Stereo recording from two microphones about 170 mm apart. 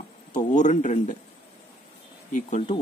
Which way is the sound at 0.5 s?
45° left (ahead or behind).